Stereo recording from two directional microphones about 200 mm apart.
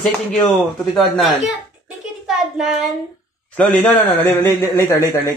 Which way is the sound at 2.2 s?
Centre (ahead or behind).